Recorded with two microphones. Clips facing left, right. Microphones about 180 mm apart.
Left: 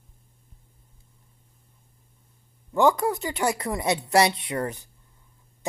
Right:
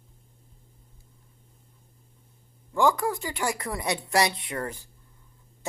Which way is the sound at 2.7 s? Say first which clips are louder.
Left 3 dB; 20° left (ahead or behind).